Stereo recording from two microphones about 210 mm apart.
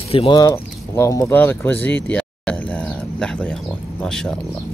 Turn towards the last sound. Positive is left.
turn(degrees=5)  # may be behind; listen again after turning